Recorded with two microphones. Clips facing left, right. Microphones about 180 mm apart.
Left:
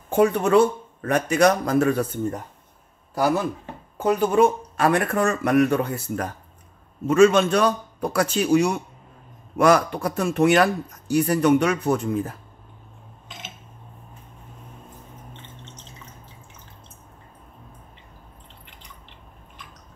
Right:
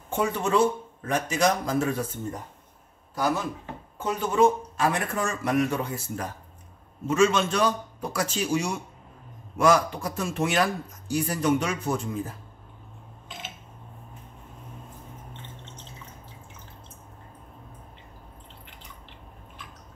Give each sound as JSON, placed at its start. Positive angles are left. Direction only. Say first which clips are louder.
{"t": 0.1, "sound": "speech", "louder": "left 7 dB", "side_deg": 60}
{"t": 4.0, "sound": "speech", "louder": "left 4 dB", "side_deg": 60}